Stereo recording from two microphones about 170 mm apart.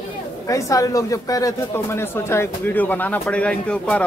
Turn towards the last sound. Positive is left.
turn(degrees=5)  # may be behind; listen again after turning